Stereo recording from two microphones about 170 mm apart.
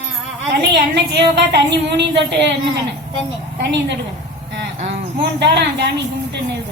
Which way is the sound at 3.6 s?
90° right.